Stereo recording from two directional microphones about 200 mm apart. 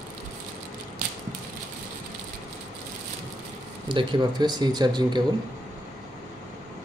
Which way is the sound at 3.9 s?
25° right (ahead or behind).